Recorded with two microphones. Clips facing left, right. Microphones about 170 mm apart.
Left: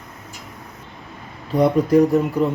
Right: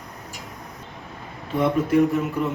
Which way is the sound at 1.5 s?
40° left (ahead or behind).